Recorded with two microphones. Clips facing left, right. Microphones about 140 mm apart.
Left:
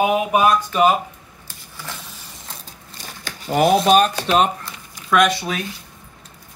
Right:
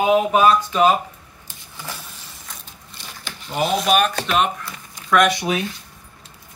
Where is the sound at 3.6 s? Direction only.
35° left (ahead or behind).